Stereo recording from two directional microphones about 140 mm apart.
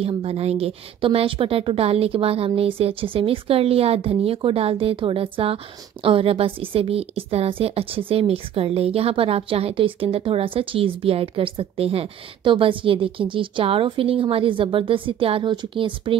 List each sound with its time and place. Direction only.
0.0 s a woman's voice: 45° right (ahead or behind)